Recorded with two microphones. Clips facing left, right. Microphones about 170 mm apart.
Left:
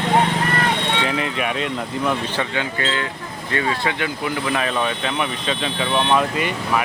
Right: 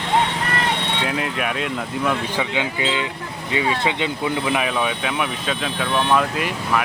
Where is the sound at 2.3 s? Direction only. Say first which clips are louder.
Right 1 dB; 15° right (ahead or behind).